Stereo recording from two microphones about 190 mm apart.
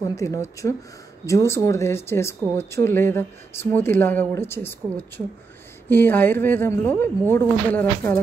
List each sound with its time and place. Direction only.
0.1 s speech: 15° left (ahead or behind)